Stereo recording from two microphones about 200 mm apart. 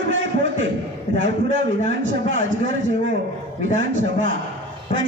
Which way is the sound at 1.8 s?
70° right (ahead or behind).